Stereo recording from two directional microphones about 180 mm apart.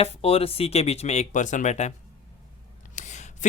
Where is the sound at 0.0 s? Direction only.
35° left (ahead or behind).